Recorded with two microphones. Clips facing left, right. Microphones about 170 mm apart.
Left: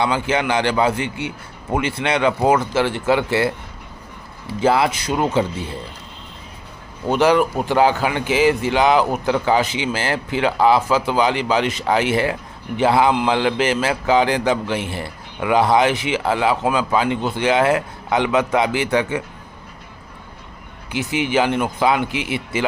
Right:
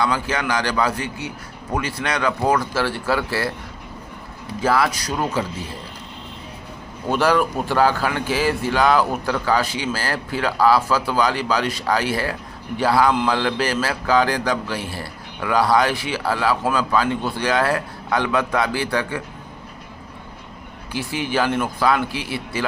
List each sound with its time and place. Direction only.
0.0 s a man's voice: 25° left (ahead or behind)
4.6 s a man's voice: 25° left (ahead or behind)
7.1 s a man's voice: 20° left (ahead or behind)
20.9 s a man's voice: 20° left (ahead or behind)